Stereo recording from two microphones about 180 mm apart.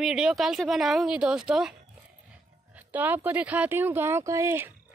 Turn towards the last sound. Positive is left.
turn(degrees=-15)  # may be behind; listen again after turning